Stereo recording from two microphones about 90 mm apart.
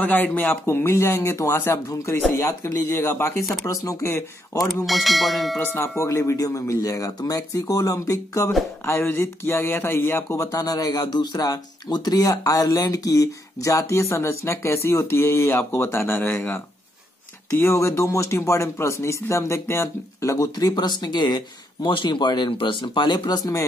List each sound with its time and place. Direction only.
0.0 s speech: 15° left (ahead or behind); by 4.1 s 40° left (ahead or behind)
4.8 s speech: centre (ahead or behind)
5.6 s speech: 20° left (ahead or behind)
5.9 s speech: 35° left (ahead or behind)
8.8 s speech: 25° left (ahead or behind)
17.6 s speech: 30° left (ahead or behind); by 21.4 s 50° left (ahead or behind)
21.8 s speech: 65° left (ahead or behind); by 23.5 s 50° left (ahead or behind)